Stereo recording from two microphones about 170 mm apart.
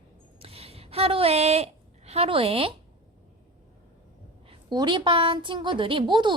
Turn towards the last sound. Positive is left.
turn(degrees=-25)  # may be behind; listen again after turning